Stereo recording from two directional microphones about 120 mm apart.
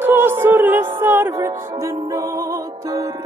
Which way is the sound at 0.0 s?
20° right (ahead or behind).